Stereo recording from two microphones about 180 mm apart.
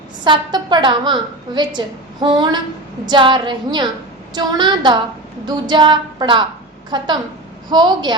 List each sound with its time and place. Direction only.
0.3 s a woman's voice: 25° right (ahead or behind)